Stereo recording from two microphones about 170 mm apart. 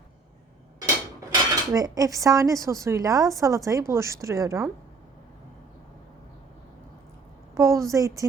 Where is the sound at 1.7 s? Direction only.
20° right (ahead or behind).